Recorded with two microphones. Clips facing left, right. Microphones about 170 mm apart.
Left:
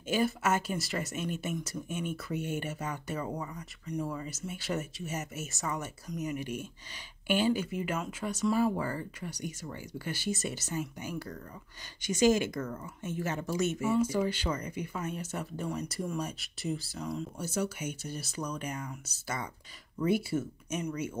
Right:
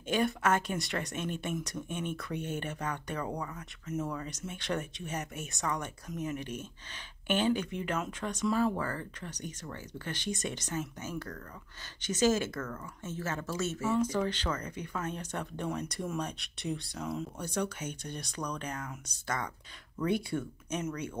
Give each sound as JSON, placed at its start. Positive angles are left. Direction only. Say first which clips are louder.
{"t": 0.0, "sound": "speech", "louder": "even", "side_deg": 5}